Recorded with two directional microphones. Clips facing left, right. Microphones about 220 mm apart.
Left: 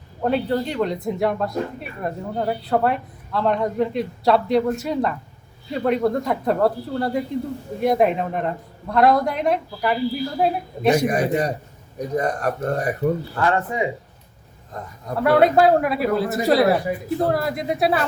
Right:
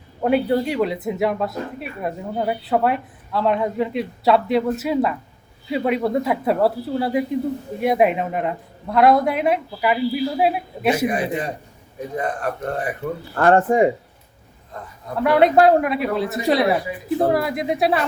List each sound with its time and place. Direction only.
0.3 s a woman's voice: 10° right (ahead or behind)
10.9 s a man's voice: 45° left (ahead or behind)
13.3 s speech: 50° right (ahead or behind)
15.2 s a woman's voice: centre (ahead or behind)